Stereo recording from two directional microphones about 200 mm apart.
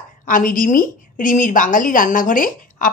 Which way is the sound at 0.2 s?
45° left (ahead or behind).